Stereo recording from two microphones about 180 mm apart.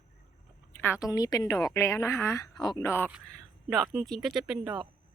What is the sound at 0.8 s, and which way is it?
A woman's voice, 15° left (ahead or behind).